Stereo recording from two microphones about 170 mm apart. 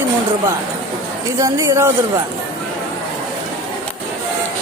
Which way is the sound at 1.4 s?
15° right (ahead or behind).